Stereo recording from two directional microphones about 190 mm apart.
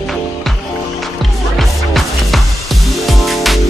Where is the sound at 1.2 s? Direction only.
Centre (ahead or behind).